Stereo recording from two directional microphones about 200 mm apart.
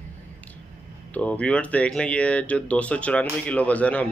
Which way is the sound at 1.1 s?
5° left (ahead or behind).